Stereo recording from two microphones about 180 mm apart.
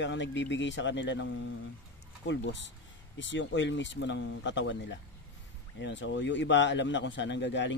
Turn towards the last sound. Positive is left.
turn(degrees=90)